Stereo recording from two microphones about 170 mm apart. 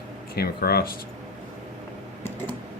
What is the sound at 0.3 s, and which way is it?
Speech, 65° left (ahead or behind).